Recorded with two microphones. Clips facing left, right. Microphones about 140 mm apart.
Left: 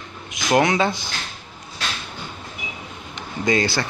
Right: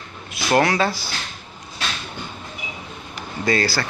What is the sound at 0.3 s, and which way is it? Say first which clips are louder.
Speech: even; 15° left (ahead or behind).